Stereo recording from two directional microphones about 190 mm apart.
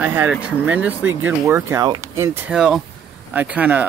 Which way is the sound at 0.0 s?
10° right (ahead or behind).